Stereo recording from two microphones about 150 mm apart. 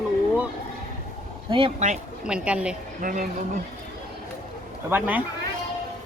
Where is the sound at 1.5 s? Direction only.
35° right (ahead or behind).